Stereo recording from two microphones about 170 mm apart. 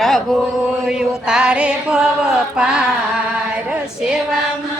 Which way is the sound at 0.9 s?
5° right (ahead or behind).